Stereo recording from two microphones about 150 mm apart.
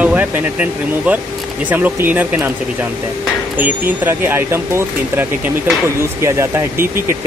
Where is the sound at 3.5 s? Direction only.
15° right (ahead or behind).